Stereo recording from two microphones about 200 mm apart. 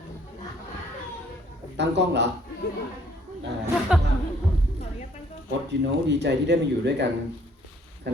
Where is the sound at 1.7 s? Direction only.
60° right (ahead or behind).